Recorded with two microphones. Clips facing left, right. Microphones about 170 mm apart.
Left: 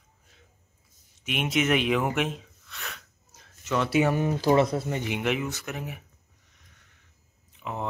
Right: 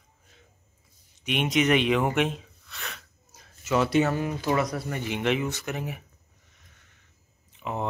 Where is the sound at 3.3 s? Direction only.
10° right (ahead or behind).